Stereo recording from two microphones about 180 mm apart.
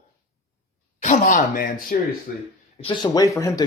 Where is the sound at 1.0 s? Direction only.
45° left (ahead or behind).